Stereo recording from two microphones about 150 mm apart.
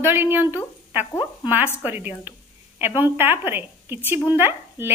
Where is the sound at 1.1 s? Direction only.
30° left (ahead or behind).